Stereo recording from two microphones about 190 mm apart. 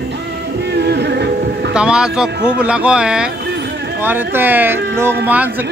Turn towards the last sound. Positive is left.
turn(degrees=-10)  # may be behind; listen again after turning